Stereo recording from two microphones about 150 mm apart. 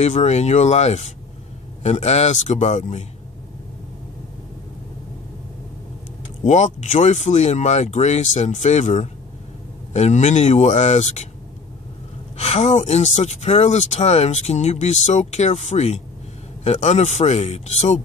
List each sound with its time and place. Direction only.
0.0 s speech: 45° left (ahead or behind)
6.4 s speech: 50° left (ahead or behind)
12.4 s speech: 45° left (ahead or behind)